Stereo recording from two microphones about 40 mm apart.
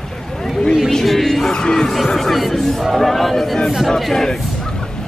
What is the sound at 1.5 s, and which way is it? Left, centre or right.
Music, centre.